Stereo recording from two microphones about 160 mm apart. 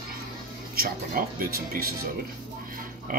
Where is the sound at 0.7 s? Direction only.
65° right (ahead or behind).